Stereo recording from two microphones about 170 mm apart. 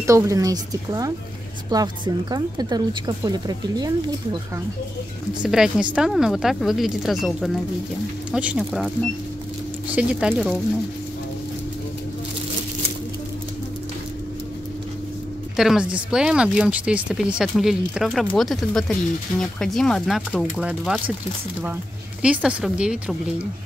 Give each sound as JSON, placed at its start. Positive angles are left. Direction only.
{"t": 0.0, "sound": "a woman's voice", "side_deg": -20}
{"t": 5.4, "sound": "speech", "side_deg": -5}
{"t": 9.9, "sound": "speech", "side_deg": -5}
{"t": 15.5, "sound": "speech", "side_deg": -5}
{"t": 22.2, "sound": "speech", "side_deg": -5}